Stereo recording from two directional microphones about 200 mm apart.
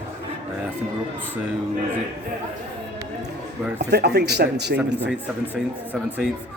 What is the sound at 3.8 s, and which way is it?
Speech, 55° right (ahead or behind).